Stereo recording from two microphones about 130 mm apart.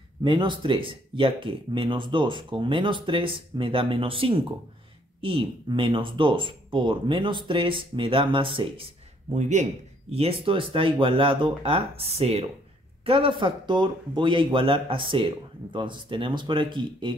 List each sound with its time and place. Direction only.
0.2 s speech: 35° right (ahead or behind)
9.3 s a man's voice: 65° right (ahead or behind)
10.1 s speech: 45° right (ahead or behind)